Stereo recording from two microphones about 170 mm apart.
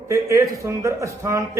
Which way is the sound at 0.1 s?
15° right (ahead or behind).